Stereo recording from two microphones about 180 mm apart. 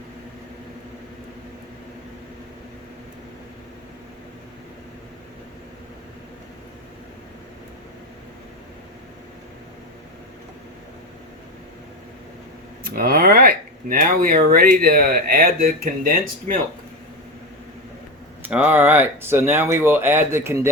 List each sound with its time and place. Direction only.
12.8 s speech: 55° right (ahead or behind)
18.4 s speech: 10° right (ahead or behind)